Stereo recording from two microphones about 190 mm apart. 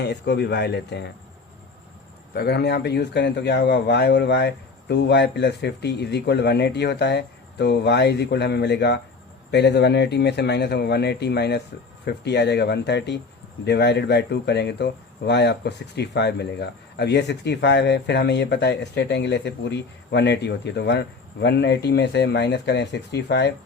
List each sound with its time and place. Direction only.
0.0 s speech: 60° left (ahead or behind)
2.3 s speech: 55° left (ahead or behind)